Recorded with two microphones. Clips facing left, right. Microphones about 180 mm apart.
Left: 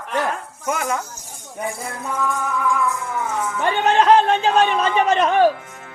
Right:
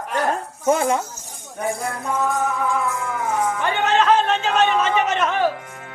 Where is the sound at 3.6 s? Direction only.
35° left (ahead or behind).